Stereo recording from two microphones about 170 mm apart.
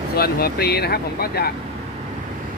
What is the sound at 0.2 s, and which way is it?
Speech, 65° left (ahead or behind).